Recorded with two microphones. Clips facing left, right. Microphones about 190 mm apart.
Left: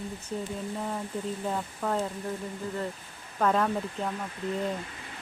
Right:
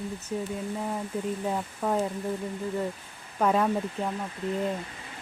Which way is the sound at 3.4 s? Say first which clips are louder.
Right 2 dB; 10° right (ahead or behind).